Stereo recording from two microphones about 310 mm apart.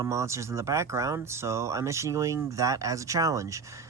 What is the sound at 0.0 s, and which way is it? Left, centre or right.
Speech, centre.